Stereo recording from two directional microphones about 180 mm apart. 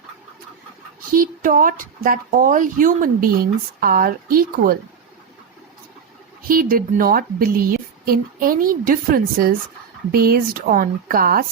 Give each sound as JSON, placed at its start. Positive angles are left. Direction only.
{"t": 1.1, "sound": "speech", "side_deg": -50}
{"t": 6.5, "sound": "speech", "side_deg": -55}